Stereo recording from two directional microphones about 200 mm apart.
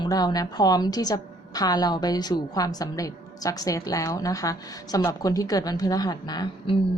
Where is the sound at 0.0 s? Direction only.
20° left (ahead or behind).